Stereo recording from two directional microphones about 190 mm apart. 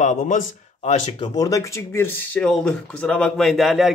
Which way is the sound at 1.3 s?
15° left (ahead or behind).